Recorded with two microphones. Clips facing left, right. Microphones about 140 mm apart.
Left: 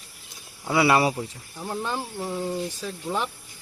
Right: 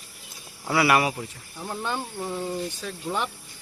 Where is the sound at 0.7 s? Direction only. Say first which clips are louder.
Left 1 dB; 25° left (ahead or behind).